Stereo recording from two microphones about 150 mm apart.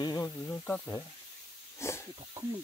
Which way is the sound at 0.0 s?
20° left (ahead or behind).